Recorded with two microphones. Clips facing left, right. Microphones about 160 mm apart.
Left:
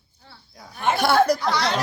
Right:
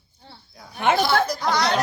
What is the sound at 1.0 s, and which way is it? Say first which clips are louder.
Speech: left 3 dB; 65° left (ahead or behind).